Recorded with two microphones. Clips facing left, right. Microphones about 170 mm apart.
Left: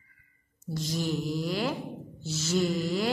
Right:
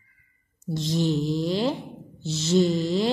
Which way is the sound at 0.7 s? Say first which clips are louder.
Right 6 dB; 25° right (ahead or behind).